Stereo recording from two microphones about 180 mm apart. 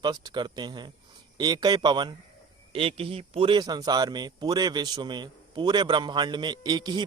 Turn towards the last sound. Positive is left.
turn(degrees=-25)  # may be behind; listen again after turning